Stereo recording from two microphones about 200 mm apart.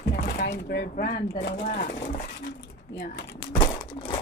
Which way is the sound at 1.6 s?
40° left (ahead or behind).